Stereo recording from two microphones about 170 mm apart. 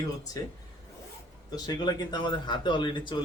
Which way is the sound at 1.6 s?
25° left (ahead or behind).